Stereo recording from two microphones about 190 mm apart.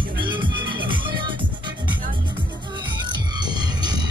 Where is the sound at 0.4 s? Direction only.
25° right (ahead or behind).